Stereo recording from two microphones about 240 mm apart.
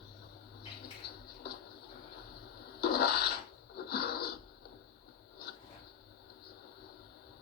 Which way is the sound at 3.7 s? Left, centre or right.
Left.